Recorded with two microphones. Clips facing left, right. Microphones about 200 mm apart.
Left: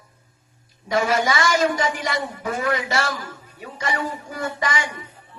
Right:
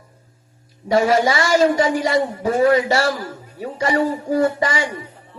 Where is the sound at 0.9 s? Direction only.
35° right (ahead or behind).